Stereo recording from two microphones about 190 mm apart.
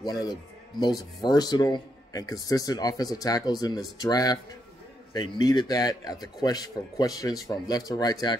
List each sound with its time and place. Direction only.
0.0 s speech: 20° left (ahead or behind)